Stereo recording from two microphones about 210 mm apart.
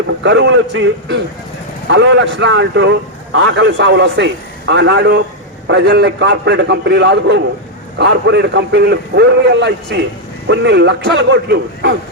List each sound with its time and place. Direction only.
0.2 s a man's voice: 55° right (ahead or behind)